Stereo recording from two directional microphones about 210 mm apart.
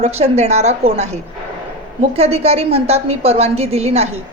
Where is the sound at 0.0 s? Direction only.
30° right (ahead or behind).